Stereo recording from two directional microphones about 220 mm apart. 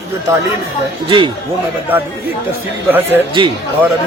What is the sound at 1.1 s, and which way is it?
Speech, 20° right (ahead or behind).